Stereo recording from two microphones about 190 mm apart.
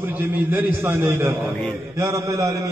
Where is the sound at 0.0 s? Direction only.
10° right (ahead or behind).